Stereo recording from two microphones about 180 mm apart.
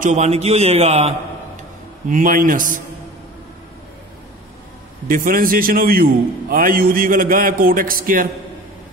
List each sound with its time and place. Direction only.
0.0 s a man's voice: 40° right (ahead or behind)
2.0 s a man's voice: 50° right (ahead or behind)
5.0 s a man's voice: 50° right (ahead or behind)